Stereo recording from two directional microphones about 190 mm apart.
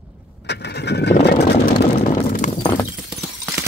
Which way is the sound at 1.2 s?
60° left (ahead or behind).